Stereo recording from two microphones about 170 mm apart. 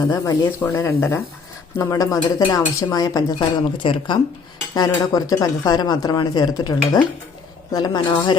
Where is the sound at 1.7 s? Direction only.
15° left (ahead or behind).